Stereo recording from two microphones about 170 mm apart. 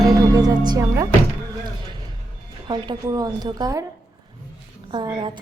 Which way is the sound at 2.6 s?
25° right (ahead or behind).